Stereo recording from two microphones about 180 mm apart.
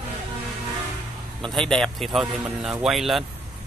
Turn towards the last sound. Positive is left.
turn(degrees=0)  # may be behind; listen again after turning